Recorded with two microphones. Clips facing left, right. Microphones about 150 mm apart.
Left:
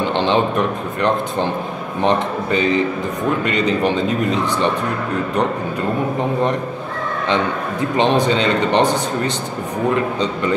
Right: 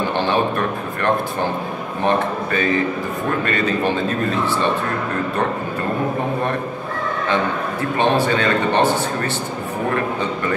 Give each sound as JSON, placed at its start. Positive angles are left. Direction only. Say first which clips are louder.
{"t": 0.2, "sound": "a sound", "louder": "left 3 dB", "side_deg": 20}
{"t": 2.0, "sound": "speech", "louder": "left 1 dB", "side_deg": 20}
{"t": 8.0, "sound": "speech", "louder": "left 2 dB", "side_deg": 20}